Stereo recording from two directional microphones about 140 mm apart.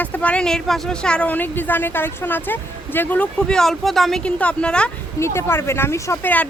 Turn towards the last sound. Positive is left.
turn(degrees=15)  # may be behind; listen again after turning